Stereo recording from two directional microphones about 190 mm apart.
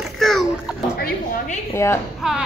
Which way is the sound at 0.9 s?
50° left (ahead or behind).